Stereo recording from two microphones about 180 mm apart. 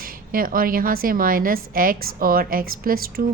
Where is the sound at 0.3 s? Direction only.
50° right (ahead or behind).